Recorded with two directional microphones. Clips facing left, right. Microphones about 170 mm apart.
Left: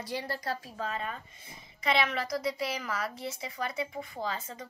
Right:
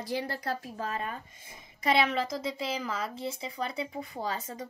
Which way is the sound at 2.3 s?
25° right (ahead or behind).